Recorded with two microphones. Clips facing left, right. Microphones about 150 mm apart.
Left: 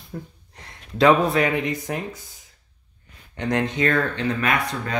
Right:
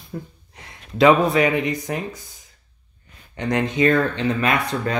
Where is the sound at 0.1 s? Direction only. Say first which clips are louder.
Right 2 dB; 5° right (ahead or behind).